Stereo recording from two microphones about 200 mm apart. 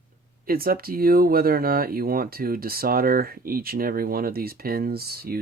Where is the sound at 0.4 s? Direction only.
45° right (ahead or behind).